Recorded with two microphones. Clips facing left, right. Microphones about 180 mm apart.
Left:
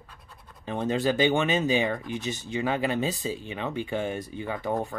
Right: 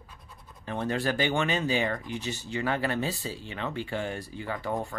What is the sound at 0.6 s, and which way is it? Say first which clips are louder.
Speech: left 3 dB; 20° left (ahead or behind).